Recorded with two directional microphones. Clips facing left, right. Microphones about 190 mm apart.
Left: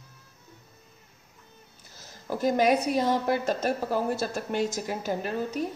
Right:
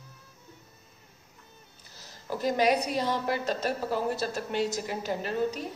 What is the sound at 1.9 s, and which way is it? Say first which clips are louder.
A woman's voice: left 2 dB; 50° left (ahead or behind).